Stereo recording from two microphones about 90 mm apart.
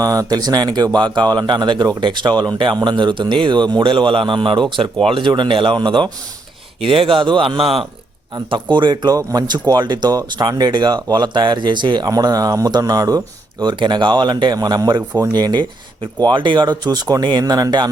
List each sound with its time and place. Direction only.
0.0 s speech: 45° right (ahead or behind); by 6.1 s 60° right (ahead or behind)
6.8 s speech: 90° right
8.4 s speech: 65° right (ahead or behind)
9.1 s speech: 45° right (ahead or behind)